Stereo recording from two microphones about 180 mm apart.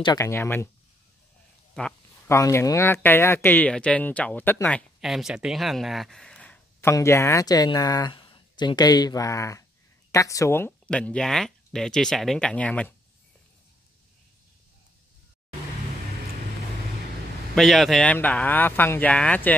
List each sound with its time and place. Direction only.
0.0 s speech: 20° left (ahead or behind)
1.8 s a sound: 5° left (ahead or behind)
2.3 s speech: 15° left (ahead or behind)
17.6 s speech: centre (ahead or behind)